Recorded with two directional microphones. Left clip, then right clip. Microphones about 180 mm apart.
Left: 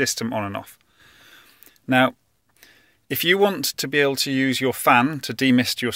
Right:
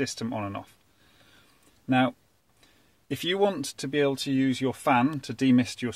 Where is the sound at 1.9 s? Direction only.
25° left (ahead or behind).